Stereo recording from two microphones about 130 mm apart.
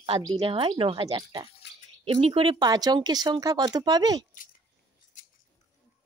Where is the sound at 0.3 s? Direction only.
45° right (ahead or behind).